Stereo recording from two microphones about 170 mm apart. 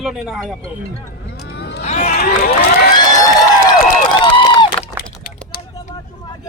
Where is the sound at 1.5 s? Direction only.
80° left.